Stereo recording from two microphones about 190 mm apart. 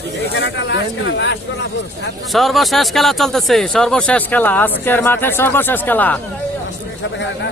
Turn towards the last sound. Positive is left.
turn(degrees=10)  # may be behind; listen again after turning